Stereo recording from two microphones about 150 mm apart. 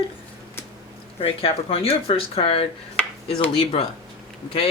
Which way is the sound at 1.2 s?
40° left (ahead or behind).